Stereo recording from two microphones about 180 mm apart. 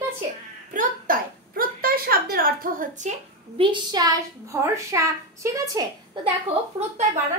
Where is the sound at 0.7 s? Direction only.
50° right (ahead or behind).